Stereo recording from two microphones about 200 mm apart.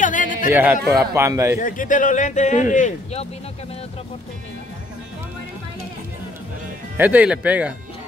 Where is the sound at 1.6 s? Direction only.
40° left (ahead or behind).